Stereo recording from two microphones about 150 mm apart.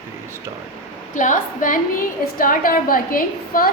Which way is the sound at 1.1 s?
60° left (ahead or behind).